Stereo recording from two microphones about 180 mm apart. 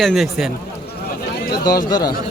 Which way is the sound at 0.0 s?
Centre (ahead or behind).